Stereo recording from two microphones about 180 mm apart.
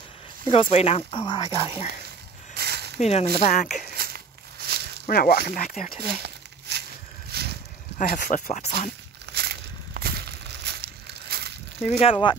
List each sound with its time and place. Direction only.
0.5 s speech: 30° left (ahead or behind)
2.5 s a sound: 65° right (ahead or behind)
3.0 s speech: 35° left (ahead or behind)
3.9 s a sound: 60° right (ahead or behind)
5.0 s speech: 55° left (ahead or behind)
6.7 s a sound: 70° right (ahead or behind)
8.0 s speech: 50° left (ahead or behind)
9.2 s crushing: 60° right (ahead or behind)
12.0 s speech: 30° left (ahead or behind)